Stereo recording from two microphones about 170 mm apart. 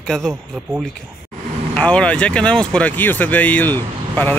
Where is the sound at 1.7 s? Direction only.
5° left (ahead or behind).